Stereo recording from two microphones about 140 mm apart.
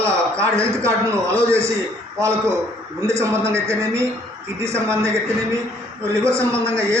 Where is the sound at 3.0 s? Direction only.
20° right (ahead or behind).